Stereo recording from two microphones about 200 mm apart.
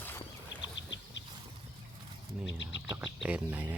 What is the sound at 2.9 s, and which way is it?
Speech, 5° right (ahead or behind).